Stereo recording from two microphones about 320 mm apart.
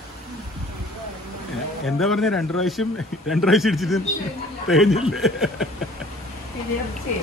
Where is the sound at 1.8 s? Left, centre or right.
Centre.